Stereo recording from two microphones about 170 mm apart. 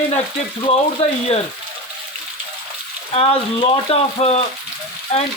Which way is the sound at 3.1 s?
35° left (ahead or behind).